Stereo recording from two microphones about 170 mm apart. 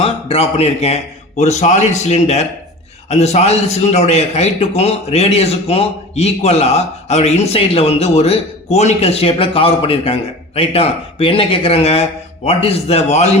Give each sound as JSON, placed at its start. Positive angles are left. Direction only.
{"t": 0.0, "sound": "a man's voice", "side_deg": 35}